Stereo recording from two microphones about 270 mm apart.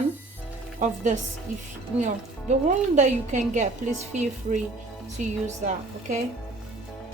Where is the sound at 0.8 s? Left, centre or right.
Right.